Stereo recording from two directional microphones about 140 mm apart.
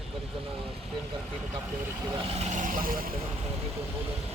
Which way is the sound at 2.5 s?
70° right (ahead or behind).